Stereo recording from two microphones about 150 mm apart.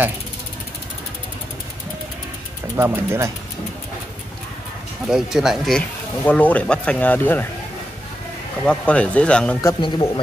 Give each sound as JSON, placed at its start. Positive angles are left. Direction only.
{"t": 2.7, "sound": "speech", "side_deg": -15}
{"t": 5.0, "sound": "speech", "side_deg": -5}
{"t": 8.6, "sound": "speech", "side_deg": 10}
{"t": 9.8, "sound": "speech", "side_deg": 30}